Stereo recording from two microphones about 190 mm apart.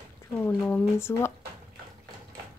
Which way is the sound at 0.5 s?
10° left (ahead or behind).